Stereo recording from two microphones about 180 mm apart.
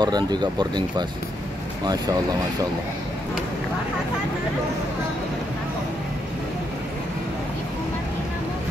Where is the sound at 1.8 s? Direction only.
20° right (ahead or behind).